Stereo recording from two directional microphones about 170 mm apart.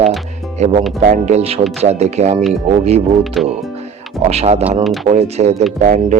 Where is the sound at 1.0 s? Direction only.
45° right (ahead or behind).